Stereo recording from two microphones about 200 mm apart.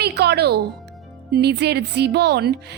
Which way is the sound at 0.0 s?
55° right (ahead or behind).